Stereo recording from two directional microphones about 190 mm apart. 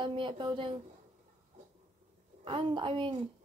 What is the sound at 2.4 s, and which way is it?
Speech, 25° right (ahead or behind).